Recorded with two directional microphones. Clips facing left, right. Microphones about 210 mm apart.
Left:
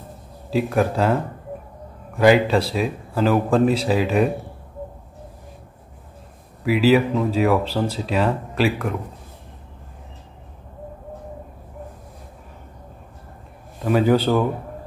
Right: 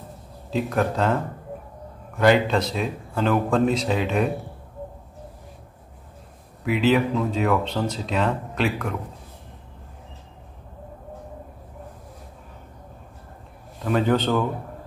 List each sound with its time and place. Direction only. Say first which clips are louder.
0.5 s speech: left 3 dB; 10° left (ahead or behind)
6.6 s speech: left 4 dB; 5° left (ahead or behind)
13.8 s speech: left 4 dB; 10° left (ahead or behind)